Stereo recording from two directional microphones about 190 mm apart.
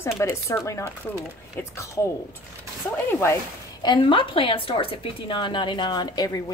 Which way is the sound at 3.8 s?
25° left (ahead or behind).